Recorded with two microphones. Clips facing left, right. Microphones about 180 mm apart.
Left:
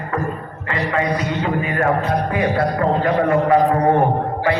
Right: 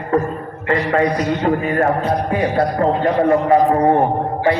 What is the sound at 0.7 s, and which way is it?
Music, 40° right (ahead or behind).